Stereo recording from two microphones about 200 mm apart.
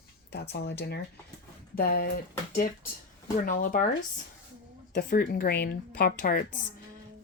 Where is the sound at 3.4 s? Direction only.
45° left (ahead or behind).